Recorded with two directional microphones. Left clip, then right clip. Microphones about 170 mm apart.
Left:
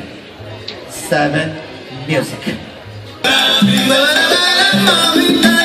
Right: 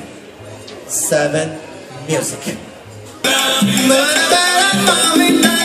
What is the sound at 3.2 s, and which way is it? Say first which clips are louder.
Music: left 3 dB; 45° right (ahead or behind).